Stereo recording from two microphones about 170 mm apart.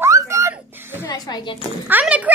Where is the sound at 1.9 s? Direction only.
10° right (ahead or behind).